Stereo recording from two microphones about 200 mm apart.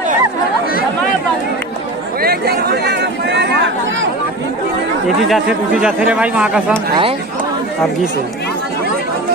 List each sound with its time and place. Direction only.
2.2 s speech: 50° right (ahead or behind)
5.2 s speech: centre (ahead or behind)